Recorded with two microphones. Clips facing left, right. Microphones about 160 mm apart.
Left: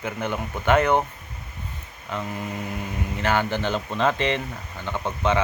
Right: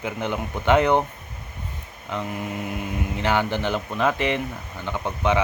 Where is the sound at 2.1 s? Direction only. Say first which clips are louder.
Right 1 dB; 15° right (ahead or behind).